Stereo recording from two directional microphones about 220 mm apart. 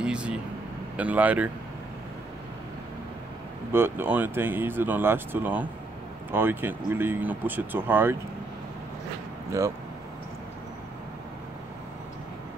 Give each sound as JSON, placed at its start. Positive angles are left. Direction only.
{"t": 0.0, "sound": "vehicle", "side_deg": -5}
{"t": 0.9, "sound": "speech", "side_deg": -5}
{"t": 3.7, "sound": "speech", "side_deg": -10}
{"t": 9.5, "sound": "speech", "side_deg": -15}